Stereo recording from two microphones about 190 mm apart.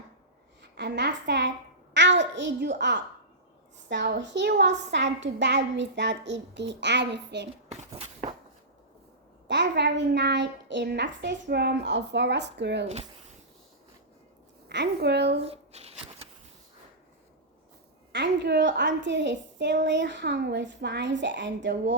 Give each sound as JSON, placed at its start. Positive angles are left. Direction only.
{"t": 0.6, "sound": "a sound", "side_deg": -65}
{"t": 3.8, "sound": "a woman's voice", "side_deg": -65}
{"t": 7.7, "sound": "a sound", "side_deg": -35}
{"t": 9.5, "sound": "a woman's voice", "side_deg": -65}
{"t": 14.7, "sound": "a woman's voice", "side_deg": -65}
{"t": 15.4, "sound": "shuffling cards", "side_deg": -30}
{"t": 18.1, "sound": "a woman's voice", "side_deg": -65}